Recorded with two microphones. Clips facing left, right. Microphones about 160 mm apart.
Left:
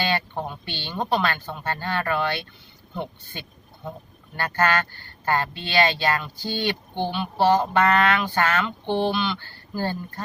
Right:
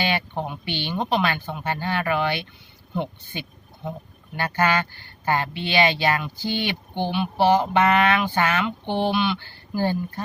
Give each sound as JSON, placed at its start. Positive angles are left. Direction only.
{"t": 0.0, "sound": "speech", "side_deg": -15}